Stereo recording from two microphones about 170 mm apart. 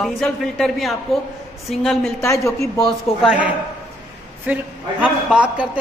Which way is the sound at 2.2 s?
15° left (ahead or behind).